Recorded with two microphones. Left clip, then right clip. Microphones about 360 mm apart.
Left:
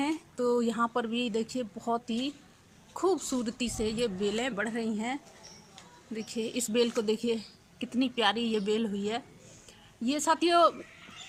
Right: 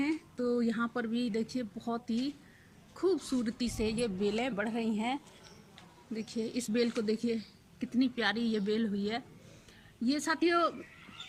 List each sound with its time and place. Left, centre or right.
0.0 s speech: centre